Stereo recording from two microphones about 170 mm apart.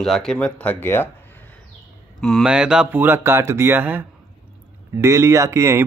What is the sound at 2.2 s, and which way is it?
Speech, centre (ahead or behind).